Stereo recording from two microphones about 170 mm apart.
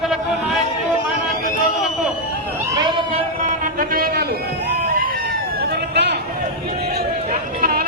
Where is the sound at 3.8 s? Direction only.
60° right (ahead or behind).